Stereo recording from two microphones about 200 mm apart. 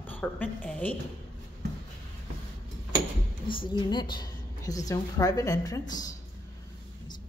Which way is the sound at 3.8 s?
20° left (ahead or behind).